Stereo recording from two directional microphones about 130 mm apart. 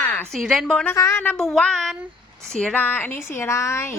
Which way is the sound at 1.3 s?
5° left (ahead or behind).